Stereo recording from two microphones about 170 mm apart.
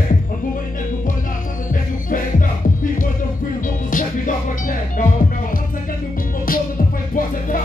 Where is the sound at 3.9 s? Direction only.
50° left (ahead or behind).